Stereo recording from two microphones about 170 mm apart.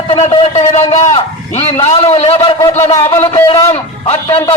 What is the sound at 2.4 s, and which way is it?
Speech, 20° left (ahead or behind).